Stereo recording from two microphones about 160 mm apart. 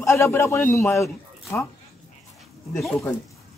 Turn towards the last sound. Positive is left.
turn(degrees=5)  # may be behind; listen again after turning